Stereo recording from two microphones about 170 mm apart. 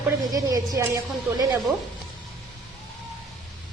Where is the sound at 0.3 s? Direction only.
20° right (ahead or behind).